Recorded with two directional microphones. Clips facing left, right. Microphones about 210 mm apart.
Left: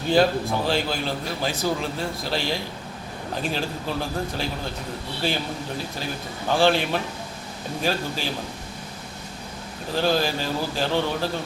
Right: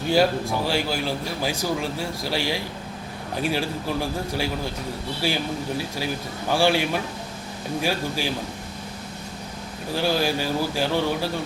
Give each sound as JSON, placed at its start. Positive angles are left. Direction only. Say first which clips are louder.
{"t": 0.1, "sound": "a man's voice", "louder": "left 1 dB", "side_deg": -10}
{"t": 5.2, "sound": "a man's voice", "louder": "right 1 dB", "side_deg": -10}
{"t": 9.9, "sound": "a man's voice", "louder": "even", "side_deg": -10}